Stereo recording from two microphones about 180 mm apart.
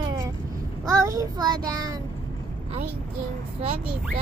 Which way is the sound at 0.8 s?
15° right (ahead or behind).